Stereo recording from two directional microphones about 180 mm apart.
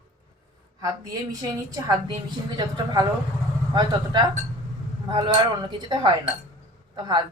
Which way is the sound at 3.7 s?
25° right (ahead or behind).